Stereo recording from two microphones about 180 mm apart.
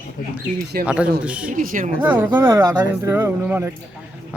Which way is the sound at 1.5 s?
50° right (ahead or behind).